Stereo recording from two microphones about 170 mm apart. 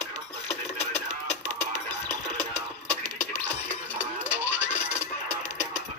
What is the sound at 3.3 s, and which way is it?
Music, 10° left (ahead or behind).